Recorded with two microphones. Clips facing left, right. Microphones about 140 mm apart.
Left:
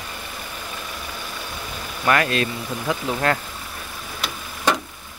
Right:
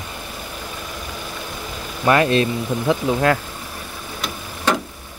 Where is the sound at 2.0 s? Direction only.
25° right (ahead or behind).